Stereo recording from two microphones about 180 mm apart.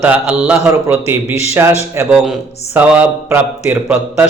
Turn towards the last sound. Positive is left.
turn(degrees=-10)  # may be behind; listen again after turning